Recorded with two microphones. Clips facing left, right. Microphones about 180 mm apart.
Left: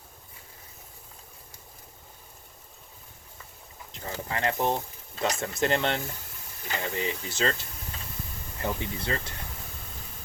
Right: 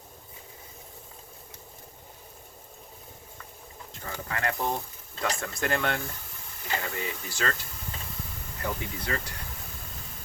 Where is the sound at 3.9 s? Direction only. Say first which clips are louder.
Left 2 dB; 20° left (ahead or behind).